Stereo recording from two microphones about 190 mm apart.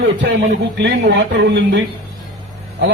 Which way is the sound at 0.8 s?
65° right (ahead or behind).